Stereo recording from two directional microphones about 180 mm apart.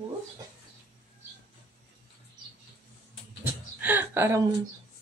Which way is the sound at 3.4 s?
10° right (ahead or behind).